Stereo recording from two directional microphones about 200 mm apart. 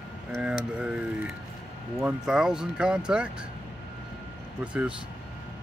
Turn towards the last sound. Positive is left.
turn(degrees=-5)  # may be behind; listen again after turning